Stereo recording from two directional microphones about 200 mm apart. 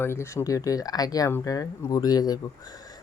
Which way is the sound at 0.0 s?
15° left (ahead or behind).